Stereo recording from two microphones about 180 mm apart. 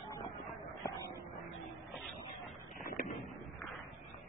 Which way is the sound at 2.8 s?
50° left (ahead or behind).